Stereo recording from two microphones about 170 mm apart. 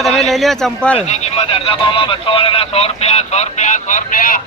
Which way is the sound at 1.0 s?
40° left (ahead or behind).